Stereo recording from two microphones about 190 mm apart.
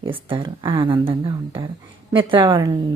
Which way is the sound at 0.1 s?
25° right (ahead or behind).